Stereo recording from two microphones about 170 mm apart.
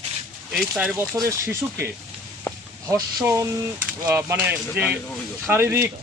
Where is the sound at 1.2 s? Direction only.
20° right (ahead or behind).